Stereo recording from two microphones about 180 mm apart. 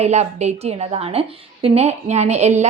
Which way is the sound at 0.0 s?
40° right (ahead or behind).